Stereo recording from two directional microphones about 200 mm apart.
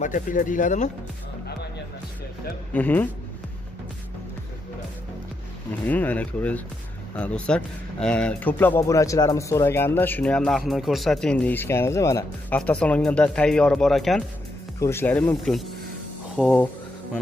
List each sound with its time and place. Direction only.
0.0 s speech: 40° left (ahead or behind)
2.7 s speech: 10° left (ahead or behind)
5.9 s speech: 10° left (ahead or behind)
14.8 s speech: 10° left (ahead or behind)
16.3 s music: 5° left (ahead or behind)